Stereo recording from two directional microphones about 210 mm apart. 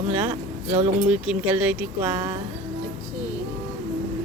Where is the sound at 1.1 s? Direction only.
5° right (ahead or behind).